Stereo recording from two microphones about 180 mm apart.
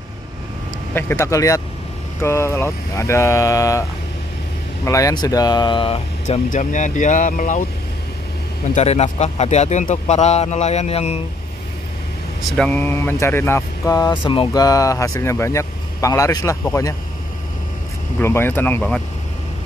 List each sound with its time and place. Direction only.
0.9 s speech: 15° left (ahead or behind)
4.8 s speech: 20° left (ahead or behind); by 7.6 s 45° left (ahead or behind)
8.7 s speech: 35° left (ahead or behind)
12.4 s speech: 5° left (ahead or behind)
18.2 s speech: 15° left (ahead or behind)